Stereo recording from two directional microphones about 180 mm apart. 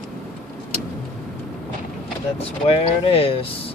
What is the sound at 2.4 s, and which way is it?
Speech, 35° left (ahead or behind).